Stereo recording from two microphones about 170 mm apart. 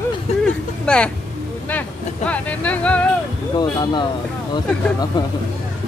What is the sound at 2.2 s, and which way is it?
Speech, 10° left (ahead or behind).